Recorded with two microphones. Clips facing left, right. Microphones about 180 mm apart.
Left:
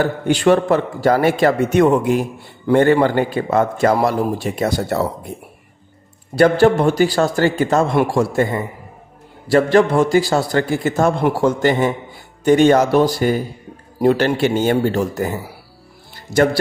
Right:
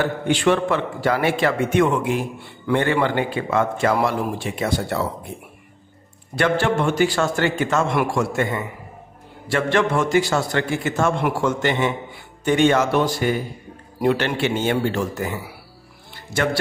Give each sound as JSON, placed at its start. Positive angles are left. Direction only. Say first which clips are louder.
{"t": 0.0, "sound": "a man's voice", "louder": "left 4 dB", "side_deg": 40}
{"t": 6.3, "sound": "a man's voice", "louder": "left 7 dB", "side_deg": 35}